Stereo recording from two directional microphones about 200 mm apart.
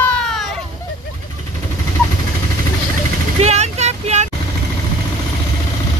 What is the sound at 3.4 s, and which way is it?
Vehicle, 35° right (ahead or behind).